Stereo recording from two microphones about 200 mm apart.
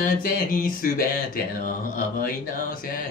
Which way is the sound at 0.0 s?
45° left (ahead or behind).